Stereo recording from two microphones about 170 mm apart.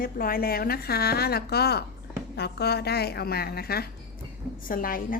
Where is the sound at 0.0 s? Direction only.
60° left (ahead or behind).